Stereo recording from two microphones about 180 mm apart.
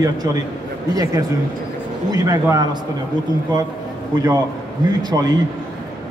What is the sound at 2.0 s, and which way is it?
Speech, 20° right (ahead or behind).